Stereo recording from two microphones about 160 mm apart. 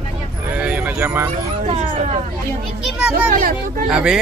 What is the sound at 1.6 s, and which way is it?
Hubbub, 40° right (ahead or behind).